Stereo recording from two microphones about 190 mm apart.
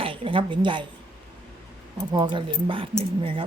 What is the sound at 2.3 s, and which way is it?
Speech, 25° right (ahead or behind).